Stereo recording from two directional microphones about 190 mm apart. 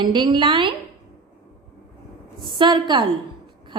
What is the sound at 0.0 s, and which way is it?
Speech, 25° right (ahead or behind).